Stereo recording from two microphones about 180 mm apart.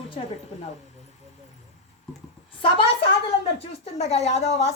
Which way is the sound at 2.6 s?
30° left (ahead or behind).